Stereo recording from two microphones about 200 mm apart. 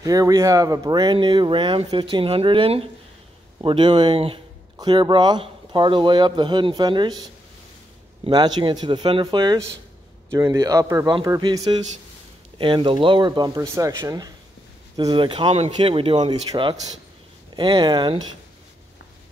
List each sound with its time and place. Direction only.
0.0 s a man's voice: 15° right (ahead or behind)